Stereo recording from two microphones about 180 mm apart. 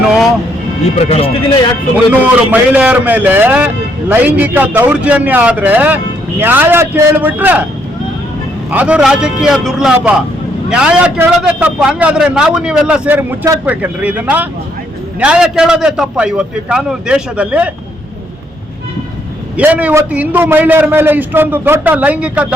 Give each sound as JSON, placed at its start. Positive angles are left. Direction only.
{"t": 0.9, "sound": "speech", "side_deg": 35}
{"t": 2.5, "sound": "a man's voice", "side_deg": -10}
{"t": 8.7, "sound": "a man's voice", "side_deg": -10}
{"t": 19.5, "sound": "a man's voice", "side_deg": -10}